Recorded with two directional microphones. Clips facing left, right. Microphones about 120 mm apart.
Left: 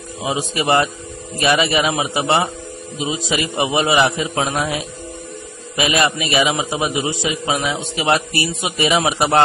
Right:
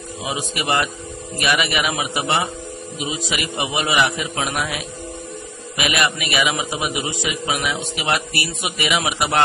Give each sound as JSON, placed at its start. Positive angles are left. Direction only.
{"t": 0.2, "sound": "a man's voice", "side_deg": 25}